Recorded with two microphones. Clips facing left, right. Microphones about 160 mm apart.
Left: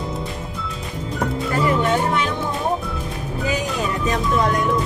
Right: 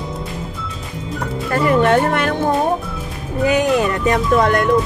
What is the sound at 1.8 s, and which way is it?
Music, 60° right (ahead or behind).